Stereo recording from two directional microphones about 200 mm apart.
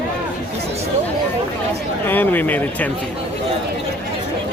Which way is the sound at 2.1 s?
10° left (ahead or behind).